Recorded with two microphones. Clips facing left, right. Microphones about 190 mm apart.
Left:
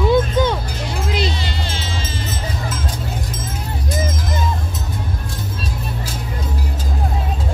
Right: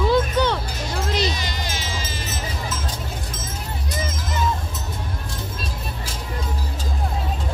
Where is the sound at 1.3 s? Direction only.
15° right (ahead or behind).